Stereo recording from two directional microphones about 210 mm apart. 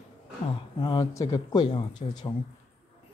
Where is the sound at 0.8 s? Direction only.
20° left (ahead or behind).